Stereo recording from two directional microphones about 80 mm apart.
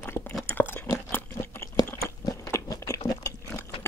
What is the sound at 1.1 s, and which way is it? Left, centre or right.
Crunch, left.